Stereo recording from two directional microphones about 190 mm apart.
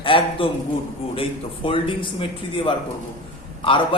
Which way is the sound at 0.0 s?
30° left (ahead or behind).